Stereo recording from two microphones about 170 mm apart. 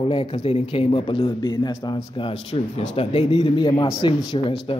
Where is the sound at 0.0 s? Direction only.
30° left (ahead or behind).